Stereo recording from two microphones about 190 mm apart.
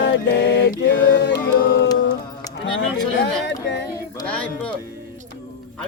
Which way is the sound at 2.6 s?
75° left (ahead or behind).